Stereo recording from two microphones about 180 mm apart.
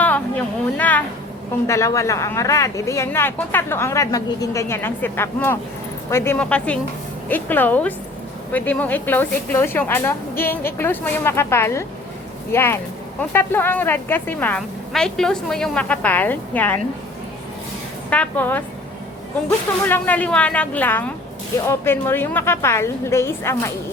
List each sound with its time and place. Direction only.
0.0 s a sound: 10° left (ahead or behind)
1.6 s speech: 15° left (ahead or behind)
18.1 s speech: 10° left (ahead or behind)